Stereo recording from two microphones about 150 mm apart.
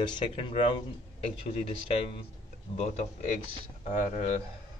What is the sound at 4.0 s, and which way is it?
Speech, 50° left (ahead or behind).